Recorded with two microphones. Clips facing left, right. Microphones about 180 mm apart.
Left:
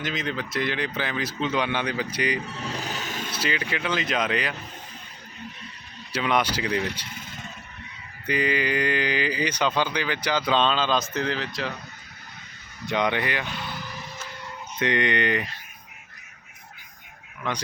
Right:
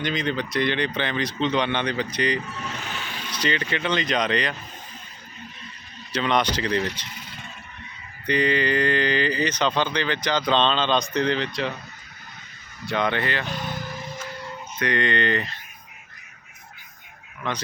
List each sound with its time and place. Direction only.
0.0 s speech: 5° left (ahead or behind)
2.7 s music: 40° left (ahead or behind)
3.3 s speech: 5° left (ahead or behind)
6.1 s speech: 10° left (ahead or behind)
8.3 s speech: 5° left (ahead or behind)
12.8 s speech: 15° left (ahead or behind)
13.6 s vehicle: 45° right (ahead or behind)
14.8 s speech: 20° left (ahead or behind)